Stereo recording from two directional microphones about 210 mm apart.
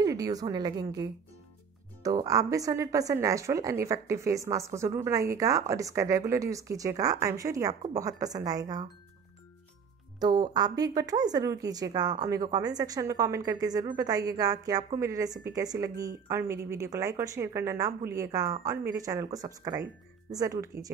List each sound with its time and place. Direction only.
0.0 s speech: 15° right (ahead or behind)
10.1 s speech: 20° right (ahead or behind)